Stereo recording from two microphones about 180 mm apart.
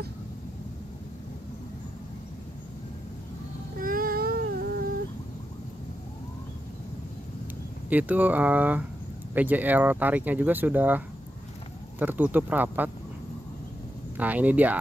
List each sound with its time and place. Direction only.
3.8 s a sound: 50° right (ahead or behind)
7.9 s speech: 10° right (ahead or behind)
14.1 s speech: 10° right (ahead or behind)